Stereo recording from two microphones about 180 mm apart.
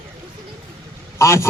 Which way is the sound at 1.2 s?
15° left (ahead or behind).